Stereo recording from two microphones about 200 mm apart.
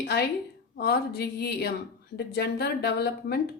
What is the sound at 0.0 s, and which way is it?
A woman's voice, 55° left (ahead or behind).